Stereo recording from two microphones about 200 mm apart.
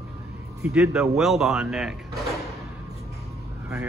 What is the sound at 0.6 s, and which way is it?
Speech, 5° right (ahead or behind).